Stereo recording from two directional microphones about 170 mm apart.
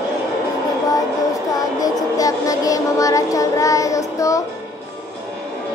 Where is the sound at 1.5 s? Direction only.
20° left (ahead or behind).